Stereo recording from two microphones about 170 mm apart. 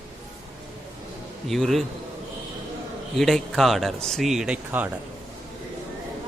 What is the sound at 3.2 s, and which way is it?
Speech, centre (ahead or behind).